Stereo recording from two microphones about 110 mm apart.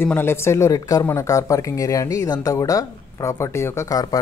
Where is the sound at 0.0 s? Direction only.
20° left (ahead or behind).